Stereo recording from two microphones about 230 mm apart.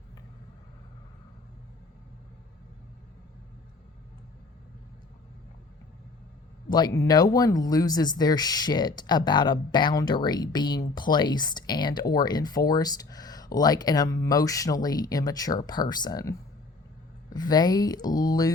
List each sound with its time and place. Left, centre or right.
6.7 s speech: centre
17.3 s speech: centre